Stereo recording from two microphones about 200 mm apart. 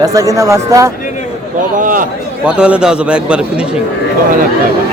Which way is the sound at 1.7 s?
40° right (ahead or behind).